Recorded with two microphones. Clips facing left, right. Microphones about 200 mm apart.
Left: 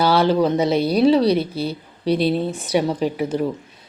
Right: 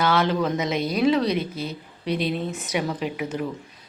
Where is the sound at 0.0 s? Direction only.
35° left (ahead or behind).